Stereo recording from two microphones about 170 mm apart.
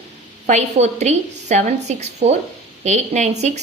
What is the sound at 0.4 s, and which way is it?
A woman's voice, 40° right (ahead or behind).